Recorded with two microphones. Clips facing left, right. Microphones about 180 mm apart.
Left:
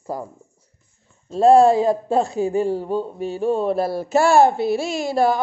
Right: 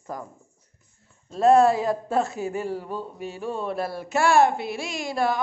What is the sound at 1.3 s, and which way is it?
Speech, 30° left (ahead or behind).